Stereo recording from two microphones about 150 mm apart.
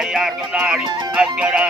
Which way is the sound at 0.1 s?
5° right (ahead or behind).